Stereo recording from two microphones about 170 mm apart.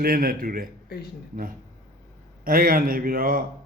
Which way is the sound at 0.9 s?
70° left (ahead or behind).